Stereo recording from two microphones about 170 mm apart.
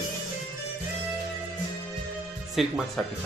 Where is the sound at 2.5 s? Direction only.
Centre (ahead or behind).